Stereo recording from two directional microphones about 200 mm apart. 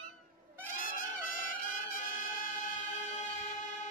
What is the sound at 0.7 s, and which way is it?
Trumpet, 45° left (ahead or behind).